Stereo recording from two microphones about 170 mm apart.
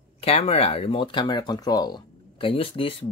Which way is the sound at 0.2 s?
35° left (ahead or behind).